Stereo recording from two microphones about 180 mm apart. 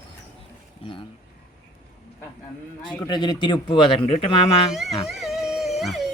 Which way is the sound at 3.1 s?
25° left (ahead or behind).